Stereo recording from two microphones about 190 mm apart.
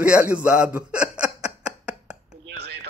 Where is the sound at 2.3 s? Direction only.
65° right (ahead or behind).